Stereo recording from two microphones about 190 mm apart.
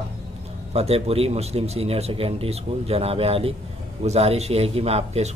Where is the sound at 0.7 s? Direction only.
35° right (ahead or behind).